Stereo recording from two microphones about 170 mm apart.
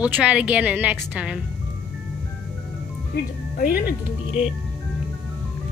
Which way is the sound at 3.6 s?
60° left (ahead or behind).